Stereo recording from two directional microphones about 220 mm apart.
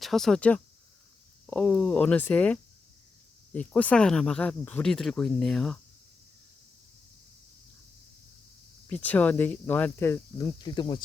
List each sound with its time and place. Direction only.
0.0 s speech: centre (ahead or behind)
8.9 s speech: 5° left (ahead or behind)